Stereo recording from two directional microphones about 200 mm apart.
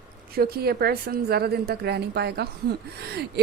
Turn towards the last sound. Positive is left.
turn(degrees=-55)  # may be behind; listen again after turning